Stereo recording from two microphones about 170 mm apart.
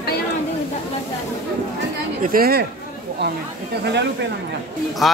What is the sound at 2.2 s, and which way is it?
Speech, 60° right (ahead or behind).